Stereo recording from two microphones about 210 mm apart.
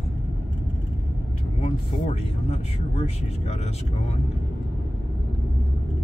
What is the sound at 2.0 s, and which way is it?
Speech, 30° left (ahead or behind).